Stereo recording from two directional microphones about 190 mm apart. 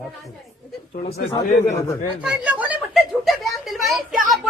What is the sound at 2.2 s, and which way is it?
Speech, 5° right (ahead or behind).